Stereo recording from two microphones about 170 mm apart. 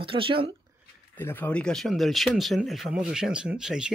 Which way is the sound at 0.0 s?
30° right (ahead or behind).